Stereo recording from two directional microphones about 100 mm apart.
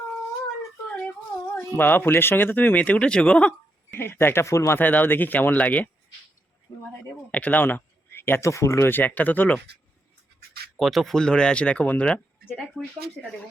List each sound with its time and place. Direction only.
0.9 s a sound: 10° left (ahead or behind)
1.7 s speech: 20° left (ahead or behind)
3.9 s speech: 25° left (ahead or behind)
4.8 s speech: 20° left (ahead or behind)
7.3 s speech: 15° left (ahead or behind)
10.8 s speech: centre (ahead or behind)